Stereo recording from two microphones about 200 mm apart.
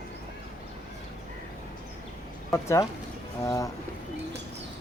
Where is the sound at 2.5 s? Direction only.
15° left (ahead or behind).